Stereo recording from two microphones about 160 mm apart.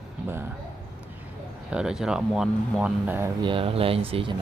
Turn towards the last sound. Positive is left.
turn(degrees=-35)  # may be behind; listen again after turning